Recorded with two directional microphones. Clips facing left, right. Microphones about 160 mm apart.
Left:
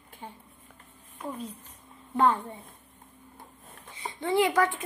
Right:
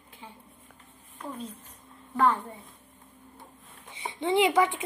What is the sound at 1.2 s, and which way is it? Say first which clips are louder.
Speech: left 1 dB; 10° left (ahead or behind).